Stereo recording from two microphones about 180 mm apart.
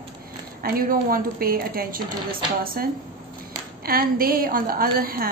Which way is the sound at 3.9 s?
55° right (ahead or behind).